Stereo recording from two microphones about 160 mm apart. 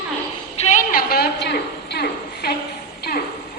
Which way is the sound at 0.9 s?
70° left (ahead or behind).